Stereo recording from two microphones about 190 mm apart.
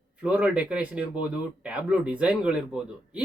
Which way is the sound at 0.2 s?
5° right (ahead or behind).